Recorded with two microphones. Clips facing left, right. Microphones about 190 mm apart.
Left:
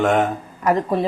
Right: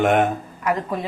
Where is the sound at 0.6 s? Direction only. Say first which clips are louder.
Left 5 dB; 35° left (ahead or behind).